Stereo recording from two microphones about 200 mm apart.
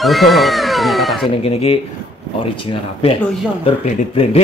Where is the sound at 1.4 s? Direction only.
30° left (ahead or behind).